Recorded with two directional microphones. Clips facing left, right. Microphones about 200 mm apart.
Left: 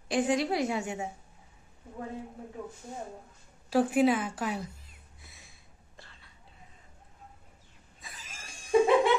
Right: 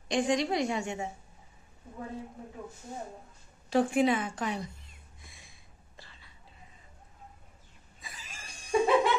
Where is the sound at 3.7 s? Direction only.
5° left (ahead or behind).